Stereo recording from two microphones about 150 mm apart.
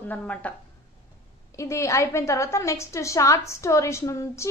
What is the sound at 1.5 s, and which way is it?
A woman's voice, 20° left (ahead or behind).